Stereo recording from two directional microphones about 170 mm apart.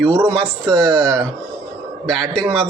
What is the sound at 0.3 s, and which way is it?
A man's voice, 5° left (ahead or behind).